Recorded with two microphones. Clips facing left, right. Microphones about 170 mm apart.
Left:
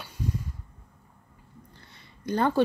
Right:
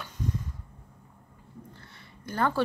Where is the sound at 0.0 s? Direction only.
10° left (ahead or behind).